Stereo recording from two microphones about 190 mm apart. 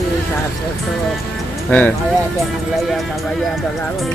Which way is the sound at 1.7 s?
10° left (ahead or behind).